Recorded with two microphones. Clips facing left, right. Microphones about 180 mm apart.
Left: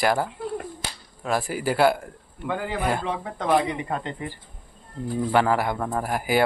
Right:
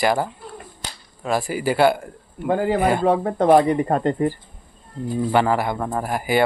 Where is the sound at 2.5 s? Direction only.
40° right (ahead or behind).